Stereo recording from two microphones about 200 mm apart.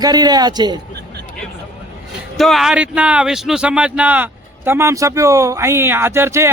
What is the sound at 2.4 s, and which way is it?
Speech, centre (ahead or behind).